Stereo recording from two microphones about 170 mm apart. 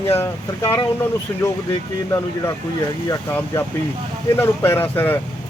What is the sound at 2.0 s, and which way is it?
Speech, 20° left (ahead or behind).